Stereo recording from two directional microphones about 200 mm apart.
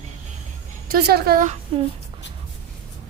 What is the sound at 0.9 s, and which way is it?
Speech, 50° right (ahead or behind).